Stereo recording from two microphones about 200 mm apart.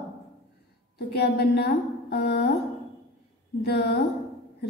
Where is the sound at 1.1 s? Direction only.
55° left (ahead or behind).